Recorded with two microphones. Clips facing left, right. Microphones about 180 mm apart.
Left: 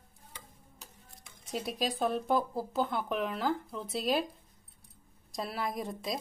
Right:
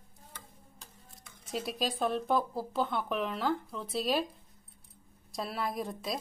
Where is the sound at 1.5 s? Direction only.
Centre (ahead or behind).